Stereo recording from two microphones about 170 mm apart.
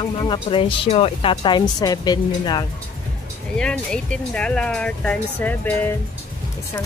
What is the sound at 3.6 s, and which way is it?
Speech, 5° left (ahead or behind).